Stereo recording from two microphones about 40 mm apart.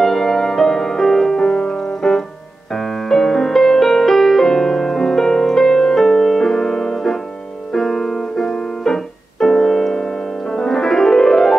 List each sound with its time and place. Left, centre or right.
0.0 s music: centre
7.7 s piano: centre